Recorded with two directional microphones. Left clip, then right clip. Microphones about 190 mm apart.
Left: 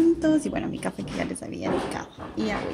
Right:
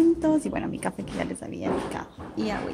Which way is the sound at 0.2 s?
5° right (ahead or behind).